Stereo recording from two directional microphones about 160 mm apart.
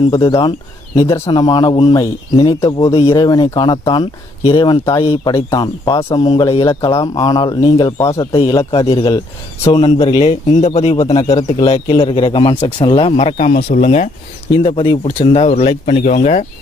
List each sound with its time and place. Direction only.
0.9 s speech: 20° left (ahead or behind)
2.8 s a man's voice: 40° left (ahead or behind)
3.1 s a man's voice: 25° left (ahead or behind)
5.3 s speech: 20° left (ahead or behind)
8.3 s a man's voice: 35° left (ahead or behind)
13.3 s speech: 50° left (ahead or behind)
14.6 s speech: 35° left (ahead or behind)